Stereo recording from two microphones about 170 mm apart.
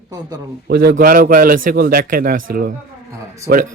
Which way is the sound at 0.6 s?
70° right (ahead or behind).